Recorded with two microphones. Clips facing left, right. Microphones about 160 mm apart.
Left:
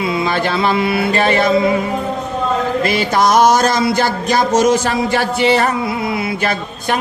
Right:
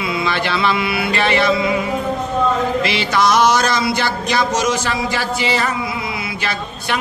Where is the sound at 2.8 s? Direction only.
45° left (ahead or behind).